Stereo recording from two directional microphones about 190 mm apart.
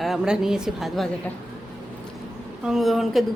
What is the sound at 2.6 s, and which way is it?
Speech, centre (ahead or behind).